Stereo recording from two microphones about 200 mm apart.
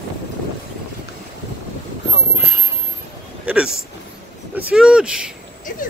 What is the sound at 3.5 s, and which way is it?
Vehicle, 5° right (ahead or behind).